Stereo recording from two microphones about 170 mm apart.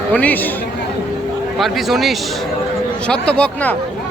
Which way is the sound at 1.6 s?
Centre (ahead or behind).